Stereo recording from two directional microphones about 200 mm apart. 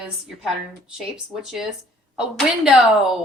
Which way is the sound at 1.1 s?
Centre (ahead or behind).